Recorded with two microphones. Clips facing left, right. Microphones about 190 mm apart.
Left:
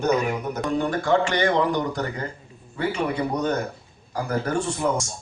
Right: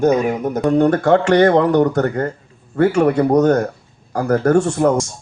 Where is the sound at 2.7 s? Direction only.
70° right (ahead or behind).